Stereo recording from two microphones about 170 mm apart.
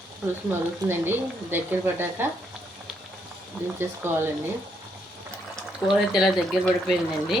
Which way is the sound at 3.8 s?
15° right (ahead or behind).